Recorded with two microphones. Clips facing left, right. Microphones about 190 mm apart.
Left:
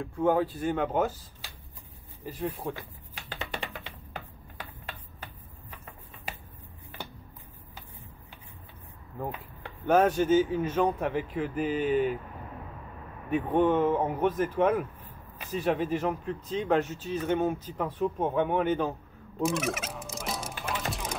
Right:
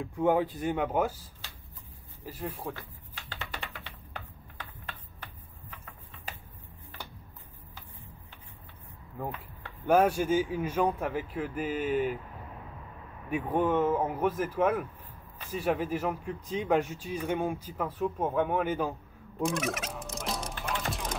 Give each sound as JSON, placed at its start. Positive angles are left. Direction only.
{"t": 0.0, "sound": "speech", "side_deg": -15}
{"t": 2.2, "sound": "a sound", "side_deg": 5}
{"t": 9.8, "sound": "speech", "side_deg": -10}
{"t": 13.3, "sound": "speech", "side_deg": -10}
{"t": 19.4, "sound": "fowl", "side_deg": 0}